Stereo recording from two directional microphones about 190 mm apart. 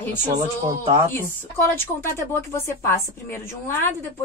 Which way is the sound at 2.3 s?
15° left (ahead or behind).